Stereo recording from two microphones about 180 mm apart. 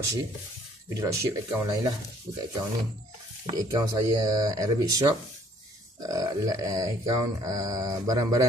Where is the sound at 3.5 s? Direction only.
20° right (ahead or behind).